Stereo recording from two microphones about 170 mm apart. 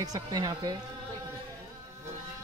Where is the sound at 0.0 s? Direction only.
20° right (ahead or behind).